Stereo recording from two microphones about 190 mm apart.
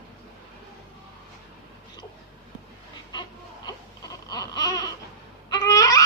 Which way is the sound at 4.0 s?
20° left (ahead or behind).